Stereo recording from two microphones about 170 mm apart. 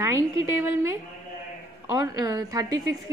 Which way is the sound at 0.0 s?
15° right (ahead or behind).